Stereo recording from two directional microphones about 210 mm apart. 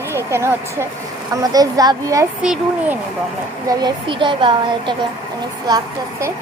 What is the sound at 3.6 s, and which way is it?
A woman's voice, 20° right (ahead or behind).